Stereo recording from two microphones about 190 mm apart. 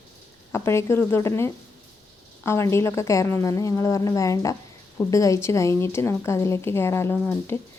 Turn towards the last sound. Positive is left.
turn(degrees=10)  # may be behind; listen again after turning